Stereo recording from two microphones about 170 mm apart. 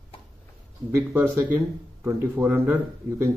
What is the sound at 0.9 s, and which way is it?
Speech, 15° right (ahead or behind).